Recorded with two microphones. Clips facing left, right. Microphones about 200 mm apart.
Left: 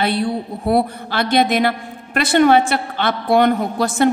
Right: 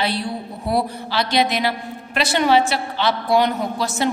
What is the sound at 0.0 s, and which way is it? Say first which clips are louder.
A woman's voice: left 5 dB; 55° left (ahead or behind).